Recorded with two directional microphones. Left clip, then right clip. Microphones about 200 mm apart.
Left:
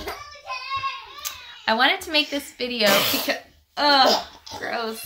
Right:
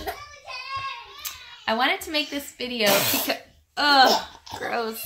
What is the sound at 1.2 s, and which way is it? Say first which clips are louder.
A child's voice: left 4 dB; centre (ahead or behind).